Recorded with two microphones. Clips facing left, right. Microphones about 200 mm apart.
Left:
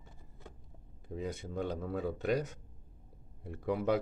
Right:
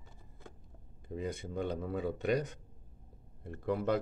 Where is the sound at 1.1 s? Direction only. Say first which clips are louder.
Right 1 dB; centre (ahead or behind).